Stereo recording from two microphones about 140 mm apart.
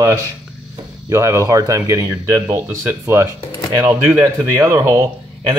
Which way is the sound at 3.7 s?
30° right (ahead or behind).